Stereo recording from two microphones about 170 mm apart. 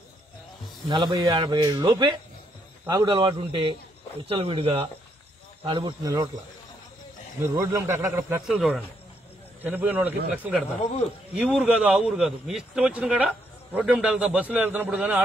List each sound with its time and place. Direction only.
0.8 s speech: 25° right (ahead or behind)
7.4 s a man's voice: 15° right (ahead or behind)
8.4 s a man's voice: centre (ahead or behind)